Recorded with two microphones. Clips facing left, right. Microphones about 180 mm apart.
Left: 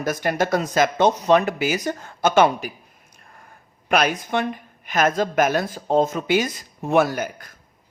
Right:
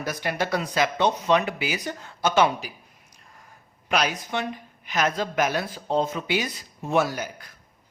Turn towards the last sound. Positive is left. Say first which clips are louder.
# left 5 dB
turn(degrees=55)  # may be behind; listen again after turning